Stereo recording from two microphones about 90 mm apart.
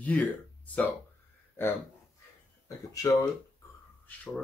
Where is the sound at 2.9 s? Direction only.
40° left (ahead or behind).